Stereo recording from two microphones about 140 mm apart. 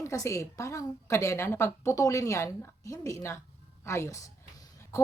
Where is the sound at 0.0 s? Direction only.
20° left (ahead or behind).